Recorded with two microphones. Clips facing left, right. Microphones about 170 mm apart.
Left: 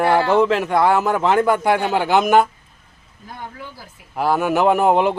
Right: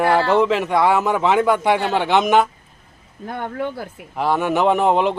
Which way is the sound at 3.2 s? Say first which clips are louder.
Right 10 dB; 60° right (ahead or behind).